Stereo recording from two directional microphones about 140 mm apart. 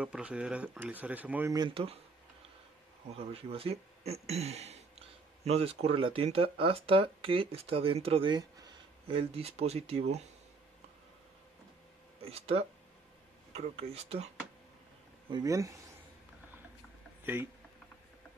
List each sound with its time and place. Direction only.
0.0 s speech: 10° right (ahead or behind)
1.5 s speech: 30° right (ahead or behind)
3.1 s speech: 45° right (ahead or behind)
9.1 s speech: 45° right (ahead or behind)
12.3 s speech: 45° right (ahead or behind)
15.2 s speech: 30° right (ahead or behind)
17.2 s a sound: 15° right (ahead or behind)